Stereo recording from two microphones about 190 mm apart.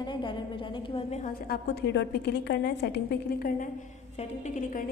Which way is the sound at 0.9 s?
35° left (ahead or behind).